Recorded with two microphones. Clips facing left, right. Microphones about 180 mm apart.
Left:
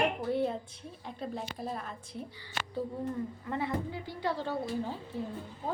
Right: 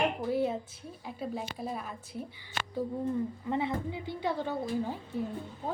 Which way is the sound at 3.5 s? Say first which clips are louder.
Right 1 dB; 20° right (ahead or behind).